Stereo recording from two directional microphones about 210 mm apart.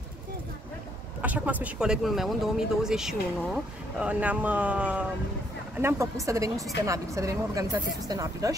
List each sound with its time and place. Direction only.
1.2 s speech: 5° right (ahead or behind)